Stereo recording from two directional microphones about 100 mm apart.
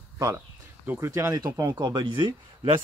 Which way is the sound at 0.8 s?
25° right (ahead or behind).